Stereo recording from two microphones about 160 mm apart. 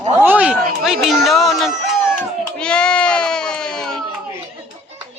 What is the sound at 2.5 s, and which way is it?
Goat, 5° left (ahead or behind).